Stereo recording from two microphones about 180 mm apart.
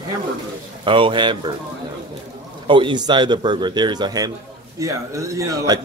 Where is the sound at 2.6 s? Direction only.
25° right (ahead or behind).